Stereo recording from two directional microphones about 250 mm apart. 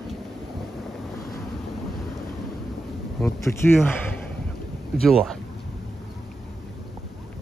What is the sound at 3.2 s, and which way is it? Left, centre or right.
Speech, centre.